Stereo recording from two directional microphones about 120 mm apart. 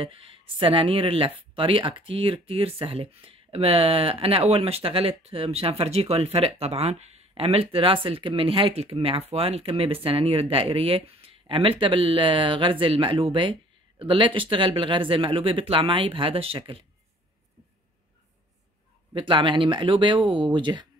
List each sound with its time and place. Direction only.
0.0 s speech: 50° right (ahead or behind)
19.1 s speech: 45° right (ahead or behind)